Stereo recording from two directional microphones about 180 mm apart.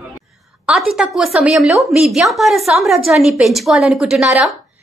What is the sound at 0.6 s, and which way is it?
A woman's voice, 5° right (ahead or behind).